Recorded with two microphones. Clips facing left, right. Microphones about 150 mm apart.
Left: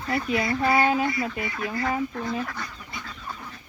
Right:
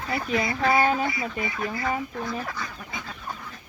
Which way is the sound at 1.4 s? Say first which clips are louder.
Right 1 dB; 45° right (ahead or behind).